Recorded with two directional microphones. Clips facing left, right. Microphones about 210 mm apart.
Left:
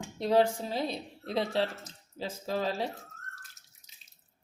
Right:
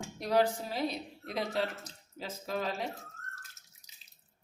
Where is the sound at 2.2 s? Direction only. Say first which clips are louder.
Left 3 dB; 30° left (ahead or behind).